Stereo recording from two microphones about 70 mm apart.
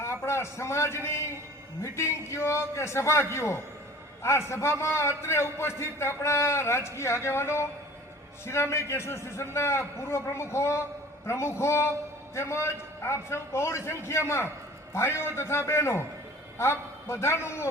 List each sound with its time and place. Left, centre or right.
0.0 s a man's voice: left